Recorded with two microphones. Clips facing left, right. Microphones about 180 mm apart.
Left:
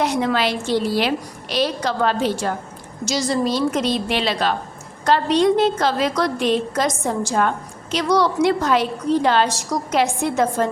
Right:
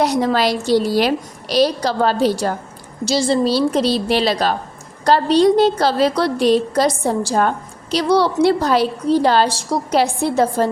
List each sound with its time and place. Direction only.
0.0 s a woman's voice: 35° right (ahead or behind)